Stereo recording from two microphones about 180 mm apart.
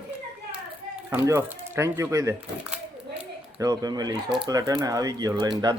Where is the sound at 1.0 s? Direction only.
15° right (ahead or behind).